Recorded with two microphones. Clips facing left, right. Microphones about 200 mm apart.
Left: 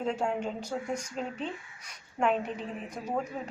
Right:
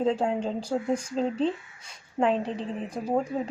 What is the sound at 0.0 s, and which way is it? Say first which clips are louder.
A woman's voice: right 5 dB; 30° right (ahead or behind).